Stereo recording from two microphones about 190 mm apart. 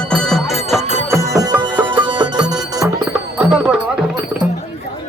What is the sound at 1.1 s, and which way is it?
Music, 15° right (ahead or behind).